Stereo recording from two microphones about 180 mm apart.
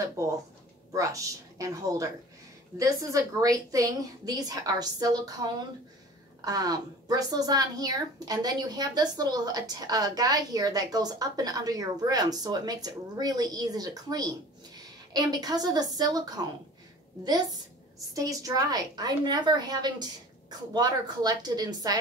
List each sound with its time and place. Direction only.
0.9 s a woman's voice: 20° right (ahead or behind)